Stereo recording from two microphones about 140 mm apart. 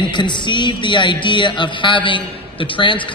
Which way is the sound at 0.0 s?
35° left (ahead or behind).